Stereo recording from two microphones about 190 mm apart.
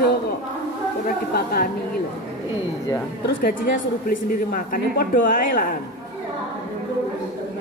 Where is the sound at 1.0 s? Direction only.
50° left (ahead or behind).